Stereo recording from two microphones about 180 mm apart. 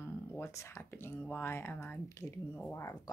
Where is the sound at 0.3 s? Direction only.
15° left (ahead or behind).